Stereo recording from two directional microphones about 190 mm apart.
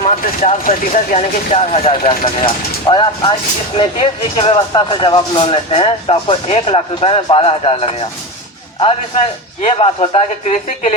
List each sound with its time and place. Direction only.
0.0 s speech: 40° left (ahead or behind)